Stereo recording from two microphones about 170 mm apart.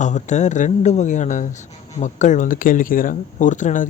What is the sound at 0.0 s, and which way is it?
Speech, 45° left (ahead or behind).